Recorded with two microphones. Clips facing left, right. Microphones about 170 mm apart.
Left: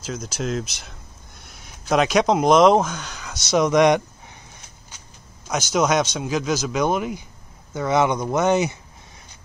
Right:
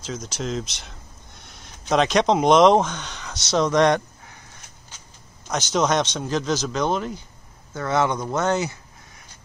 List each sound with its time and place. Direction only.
0.0 s speech: 5° left (ahead or behind)
5.5 s speech: 5° left (ahead or behind)